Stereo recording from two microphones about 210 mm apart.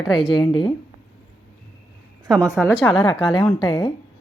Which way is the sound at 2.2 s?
15° right (ahead or behind).